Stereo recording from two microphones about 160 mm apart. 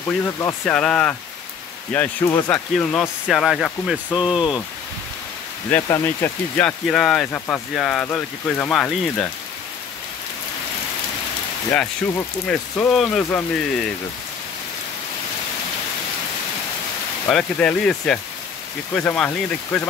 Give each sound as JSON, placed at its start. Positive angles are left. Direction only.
{"t": 0.2, "sound": "speech", "side_deg": 20}
{"t": 0.7, "sound": "speech", "side_deg": 5}
{"t": 2.2, "sound": "speech", "side_deg": 20}
{"t": 2.5, "sound": "speech", "side_deg": 10}
{"t": 4.4, "sound": "speech", "side_deg": 25}
{"t": 5.7, "sound": "speech", "side_deg": 15}
{"t": 12.4, "sound": "speech", "side_deg": 5}
{"t": 17.3, "sound": "speech", "side_deg": 5}